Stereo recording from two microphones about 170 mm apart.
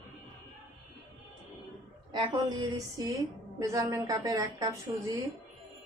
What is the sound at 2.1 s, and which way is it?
A woman's voice, 25° right (ahead or behind).